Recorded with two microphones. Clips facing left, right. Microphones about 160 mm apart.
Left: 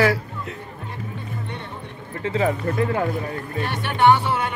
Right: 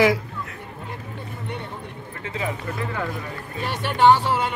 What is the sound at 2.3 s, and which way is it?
Speech, 40° left (ahead or behind).